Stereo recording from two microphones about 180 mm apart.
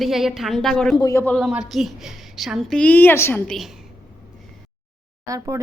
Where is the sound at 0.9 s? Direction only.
15° left (ahead or behind).